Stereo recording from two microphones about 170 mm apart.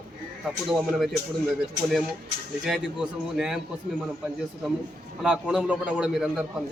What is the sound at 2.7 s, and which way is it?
Speech, 5° right (ahead or behind).